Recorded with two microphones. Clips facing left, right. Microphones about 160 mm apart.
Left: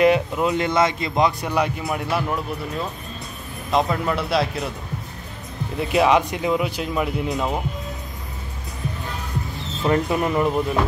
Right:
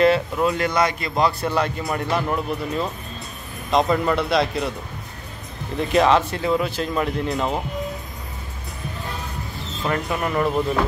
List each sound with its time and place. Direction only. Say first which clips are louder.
0.0 s a man's voice: even; 15° left (ahead or behind)
3.7 s speech: right 2 dB; centre (ahead or behind)
5.8 s a man's voice: even; 10° left (ahead or behind)
9.8 s speech: left 4 dB; 20° left (ahead or behind)